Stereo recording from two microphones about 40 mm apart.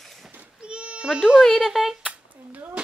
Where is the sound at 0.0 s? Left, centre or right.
Centre.